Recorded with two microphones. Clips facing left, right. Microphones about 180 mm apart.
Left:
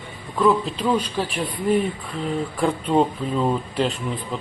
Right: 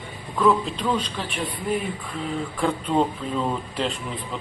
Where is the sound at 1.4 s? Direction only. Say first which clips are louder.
Left 6 dB; centre (ahead or behind).